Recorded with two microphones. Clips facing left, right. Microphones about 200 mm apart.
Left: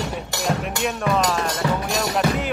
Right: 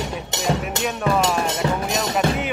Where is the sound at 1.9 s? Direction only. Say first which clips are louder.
Even; centre (ahead or behind).